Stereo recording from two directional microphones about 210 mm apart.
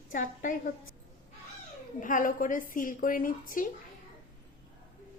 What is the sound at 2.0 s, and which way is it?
A woman's voice, 40° left (ahead or behind).